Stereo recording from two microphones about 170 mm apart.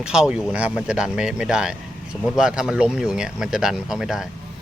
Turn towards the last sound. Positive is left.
turn(degrees=-5)  # may be behind; listen again after turning